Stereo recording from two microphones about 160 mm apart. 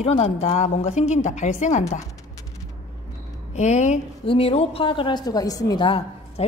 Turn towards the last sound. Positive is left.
turn(degrees=30)  # may be behind; listen again after turning